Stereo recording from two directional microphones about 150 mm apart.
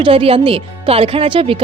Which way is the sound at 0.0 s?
40° right (ahead or behind).